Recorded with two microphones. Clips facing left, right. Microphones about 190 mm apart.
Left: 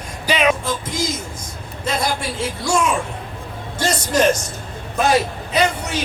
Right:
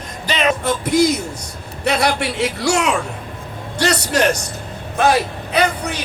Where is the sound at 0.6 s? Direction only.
65° right (ahead or behind).